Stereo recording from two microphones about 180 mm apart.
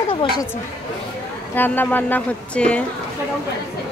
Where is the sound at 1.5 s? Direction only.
10° left (ahead or behind).